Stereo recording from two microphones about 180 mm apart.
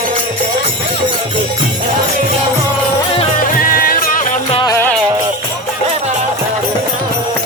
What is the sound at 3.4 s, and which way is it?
Music, 50° left (ahead or behind).